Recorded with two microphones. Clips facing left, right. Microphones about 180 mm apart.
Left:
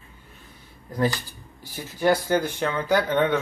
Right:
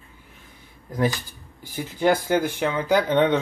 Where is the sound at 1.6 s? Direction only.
15° right (ahead or behind).